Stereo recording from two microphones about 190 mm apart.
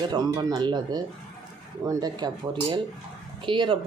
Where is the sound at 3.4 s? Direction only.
25° right (ahead or behind).